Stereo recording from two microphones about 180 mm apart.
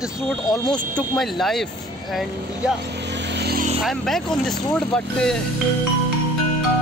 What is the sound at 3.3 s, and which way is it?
Vehicle, 60° right (ahead or behind).